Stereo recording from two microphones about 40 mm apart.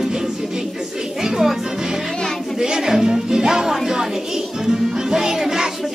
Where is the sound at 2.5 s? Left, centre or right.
Centre.